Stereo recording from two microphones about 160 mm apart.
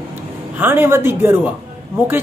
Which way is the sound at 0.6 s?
15° right (ahead or behind).